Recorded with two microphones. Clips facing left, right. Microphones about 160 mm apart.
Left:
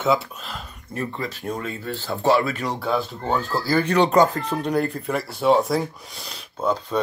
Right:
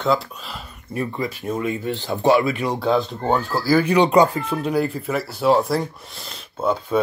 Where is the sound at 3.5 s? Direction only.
5° right (ahead or behind).